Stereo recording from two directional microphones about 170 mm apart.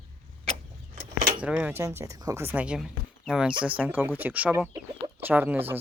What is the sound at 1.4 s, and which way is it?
Speech, 10° right (ahead or behind).